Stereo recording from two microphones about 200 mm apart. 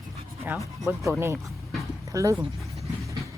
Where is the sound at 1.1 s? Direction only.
10° right (ahead or behind).